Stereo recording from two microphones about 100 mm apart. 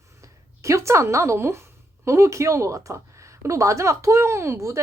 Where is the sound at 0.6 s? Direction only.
30° right (ahead or behind).